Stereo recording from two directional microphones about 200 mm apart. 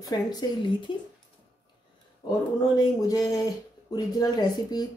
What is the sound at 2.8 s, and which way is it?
A woman's voice, 20° left (ahead or behind).